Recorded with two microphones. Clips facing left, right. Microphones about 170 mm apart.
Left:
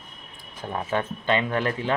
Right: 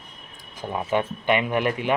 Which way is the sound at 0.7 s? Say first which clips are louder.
Right 3 dB; 10° right (ahead or behind).